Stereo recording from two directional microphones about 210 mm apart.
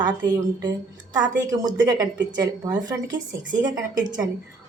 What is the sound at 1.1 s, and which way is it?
A woman's voice, 20° right (ahead or behind).